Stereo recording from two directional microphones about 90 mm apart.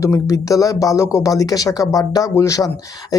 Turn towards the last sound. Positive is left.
turn(degrees=40)  # may be behind; listen again after turning